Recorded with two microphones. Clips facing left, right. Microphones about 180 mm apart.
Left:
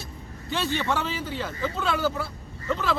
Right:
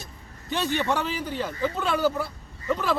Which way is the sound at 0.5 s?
15° right (ahead or behind).